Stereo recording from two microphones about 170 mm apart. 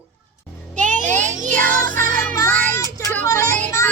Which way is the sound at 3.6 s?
15° left (ahead or behind).